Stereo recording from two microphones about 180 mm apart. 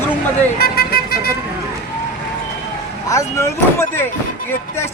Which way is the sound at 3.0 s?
15° left (ahead or behind).